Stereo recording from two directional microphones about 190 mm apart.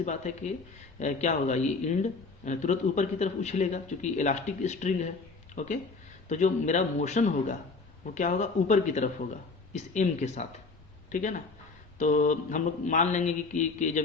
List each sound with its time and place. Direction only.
0.0 s speech: 40° left (ahead or behind)